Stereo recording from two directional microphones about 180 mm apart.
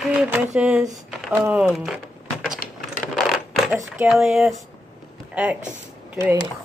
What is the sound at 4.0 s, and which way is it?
Speech, centre (ahead or behind).